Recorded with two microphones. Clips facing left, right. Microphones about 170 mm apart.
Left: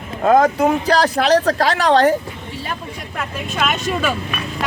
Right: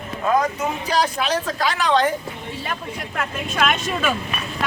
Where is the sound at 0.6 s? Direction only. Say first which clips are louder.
Left 6 dB; 70° left (ahead or behind).